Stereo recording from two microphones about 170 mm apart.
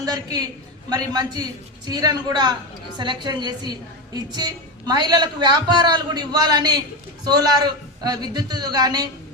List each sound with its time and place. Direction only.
0.0 s a woman's voice: 20° right (ahead or behind)